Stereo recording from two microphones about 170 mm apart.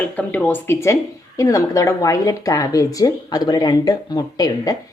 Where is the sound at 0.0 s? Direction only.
10° left (ahead or behind).